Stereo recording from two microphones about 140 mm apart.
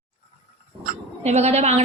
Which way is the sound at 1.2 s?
50° right (ahead or behind).